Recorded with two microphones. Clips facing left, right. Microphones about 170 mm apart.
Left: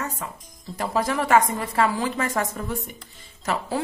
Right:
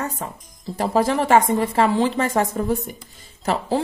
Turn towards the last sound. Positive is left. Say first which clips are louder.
# right 5 dB
turn(degrees=-30)  # may be behind; listen again after turning